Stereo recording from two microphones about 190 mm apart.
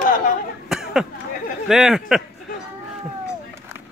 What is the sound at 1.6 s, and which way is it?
Speech, 5° right (ahead or behind).